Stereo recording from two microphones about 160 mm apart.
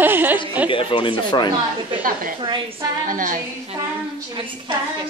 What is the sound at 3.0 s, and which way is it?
Speech, 60° right (ahead or behind).